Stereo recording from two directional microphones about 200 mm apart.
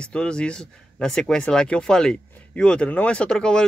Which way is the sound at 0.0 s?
5° left (ahead or behind).